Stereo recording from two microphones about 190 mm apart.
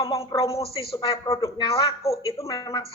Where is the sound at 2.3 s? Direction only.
15° left (ahead or behind).